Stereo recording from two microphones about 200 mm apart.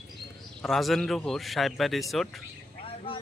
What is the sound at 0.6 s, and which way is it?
Speech, centre (ahead or behind).